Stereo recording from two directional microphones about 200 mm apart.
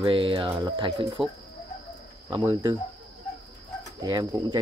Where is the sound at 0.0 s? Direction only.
25° right (ahead or behind).